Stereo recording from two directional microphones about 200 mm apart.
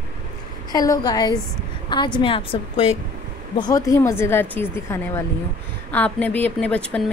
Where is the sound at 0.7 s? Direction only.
20° left (ahead or behind).